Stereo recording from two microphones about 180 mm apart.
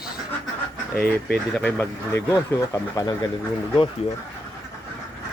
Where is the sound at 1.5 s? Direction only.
5° left (ahead or behind).